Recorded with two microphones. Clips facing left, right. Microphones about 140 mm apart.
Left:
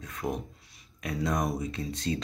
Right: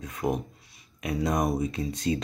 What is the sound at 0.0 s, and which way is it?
Speech, 15° right (ahead or behind).